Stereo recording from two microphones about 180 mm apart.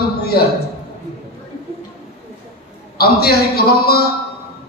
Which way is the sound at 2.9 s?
60° left (ahead or behind).